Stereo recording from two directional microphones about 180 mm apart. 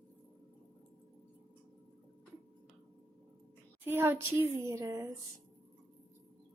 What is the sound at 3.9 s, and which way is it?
A woman's voice, 10° right (ahead or behind).